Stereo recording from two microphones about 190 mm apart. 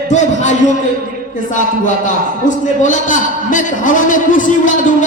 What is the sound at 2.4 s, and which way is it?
A man's voice, 40° left (ahead or behind).